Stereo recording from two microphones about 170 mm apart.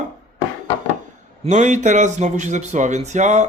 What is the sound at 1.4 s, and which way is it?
Speech, 45° right (ahead or behind).